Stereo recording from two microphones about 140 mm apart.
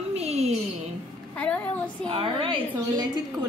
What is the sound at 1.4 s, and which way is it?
Speech, 10° left (ahead or behind).